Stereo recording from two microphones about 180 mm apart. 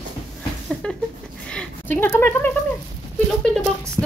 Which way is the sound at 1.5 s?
10° left (ahead or behind).